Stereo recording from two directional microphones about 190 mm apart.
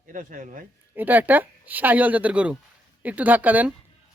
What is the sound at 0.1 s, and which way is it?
Speech, 45° right (ahead or behind).